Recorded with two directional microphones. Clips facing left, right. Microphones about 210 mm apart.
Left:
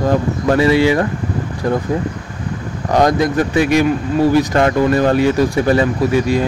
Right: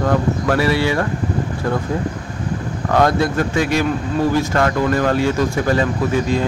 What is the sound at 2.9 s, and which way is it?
Speech, 15° left (ahead or behind).